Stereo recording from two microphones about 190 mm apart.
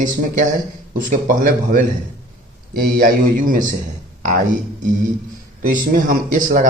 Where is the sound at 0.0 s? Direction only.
45° right (ahead or behind).